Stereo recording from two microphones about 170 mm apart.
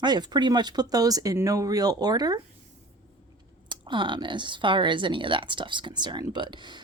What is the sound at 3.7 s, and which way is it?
Speech, 30° right (ahead or behind).